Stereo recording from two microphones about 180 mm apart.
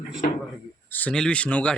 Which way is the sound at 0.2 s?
45° left (ahead or behind).